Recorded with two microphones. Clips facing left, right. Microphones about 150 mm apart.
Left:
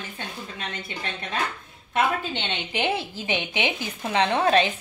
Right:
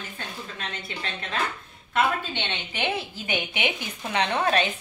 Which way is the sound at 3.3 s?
25° left (ahead or behind).